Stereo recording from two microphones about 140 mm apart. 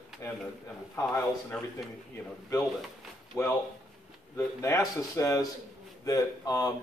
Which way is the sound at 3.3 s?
20° left (ahead or behind).